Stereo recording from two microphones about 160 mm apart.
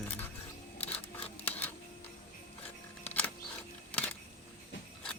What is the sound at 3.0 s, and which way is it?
Music, 10° left (ahead or behind).